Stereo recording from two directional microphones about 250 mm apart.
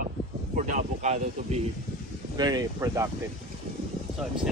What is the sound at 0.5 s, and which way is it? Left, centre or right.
Speech, right.